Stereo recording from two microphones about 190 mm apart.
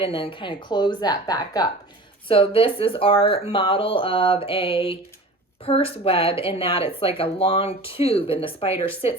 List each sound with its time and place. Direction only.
0.0 s speech: 30° left (ahead or behind)